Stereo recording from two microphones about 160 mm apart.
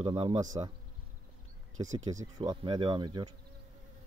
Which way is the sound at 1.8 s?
25° right (ahead or behind).